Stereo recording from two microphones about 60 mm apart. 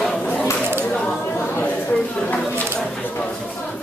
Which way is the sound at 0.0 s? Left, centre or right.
Centre.